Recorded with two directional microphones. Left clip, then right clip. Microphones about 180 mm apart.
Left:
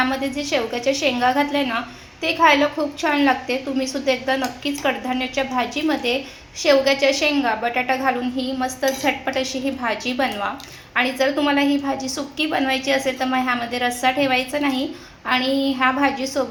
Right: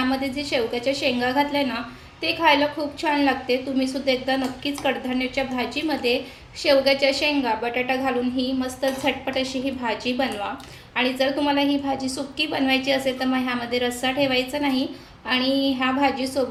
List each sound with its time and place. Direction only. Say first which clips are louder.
0.1 s a woman's voice: left 2 dB; centre (ahead or behind)